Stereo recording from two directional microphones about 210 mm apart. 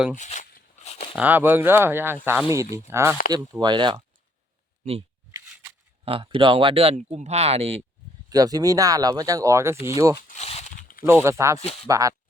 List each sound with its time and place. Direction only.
0.2 s a sound: 35° left (ahead or behind)
1.1 s speech: 10° right (ahead or behind)
4.9 s a sound: 30° right (ahead or behind)
6.1 s speech: 25° right (ahead or behind)
8.3 s speech: 15° right (ahead or behind)
10.3 s a sound: 30° left (ahead or behind)
11.0 s speech: 10° right (ahead or behind)
11.6 s speech: 30° left (ahead or behind)
11.9 s speech: 15° right (ahead or behind)